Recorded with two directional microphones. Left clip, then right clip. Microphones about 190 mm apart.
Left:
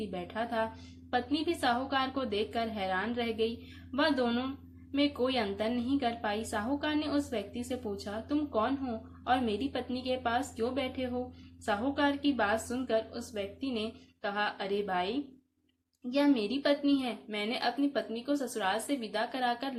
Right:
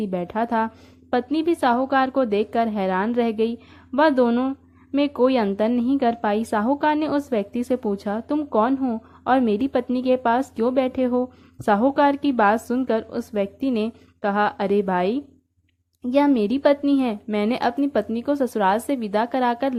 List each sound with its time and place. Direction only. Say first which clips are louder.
0.0 s a woman's voice: right 11 dB; 45° right (ahead or behind)